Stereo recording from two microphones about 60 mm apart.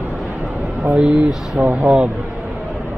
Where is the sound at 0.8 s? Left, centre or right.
Centre.